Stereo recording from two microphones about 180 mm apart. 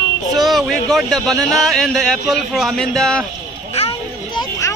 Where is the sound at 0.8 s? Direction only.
Centre (ahead or behind).